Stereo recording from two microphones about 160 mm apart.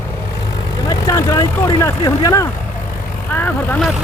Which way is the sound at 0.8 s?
20° left (ahead or behind).